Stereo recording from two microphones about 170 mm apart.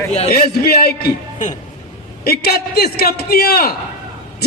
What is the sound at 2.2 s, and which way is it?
A man's voice, 65° left (ahead or behind).